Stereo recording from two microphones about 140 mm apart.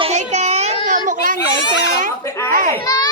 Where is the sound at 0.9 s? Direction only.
70° right (ahead or behind).